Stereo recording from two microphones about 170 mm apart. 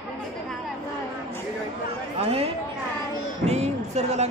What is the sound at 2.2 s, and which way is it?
A man's voice, 35° right (ahead or behind).